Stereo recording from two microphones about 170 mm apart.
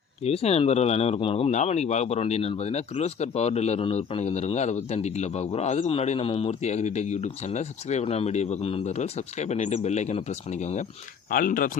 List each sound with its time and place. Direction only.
0.2 s speech: 40° left (ahead or behind)
11.3 s speech: 55° left (ahead or behind)